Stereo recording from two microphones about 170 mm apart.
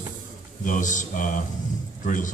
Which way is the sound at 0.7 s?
50° left (ahead or behind).